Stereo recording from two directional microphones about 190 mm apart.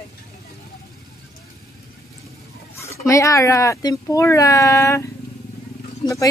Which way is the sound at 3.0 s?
15° left (ahead or behind).